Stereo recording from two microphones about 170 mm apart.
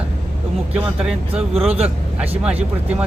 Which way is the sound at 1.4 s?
35° right (ahead or behind).